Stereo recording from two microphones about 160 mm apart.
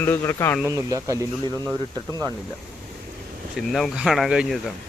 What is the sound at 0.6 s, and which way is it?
Speech, 20° right (ahead or behind).